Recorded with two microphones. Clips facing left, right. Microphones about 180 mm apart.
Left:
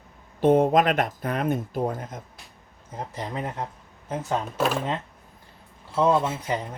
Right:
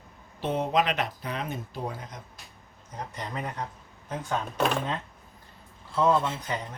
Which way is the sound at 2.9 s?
30° left (ahead or behind).